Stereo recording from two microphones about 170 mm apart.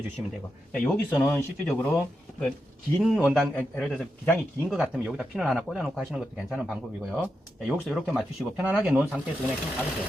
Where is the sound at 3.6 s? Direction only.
10° left (ahead or behind).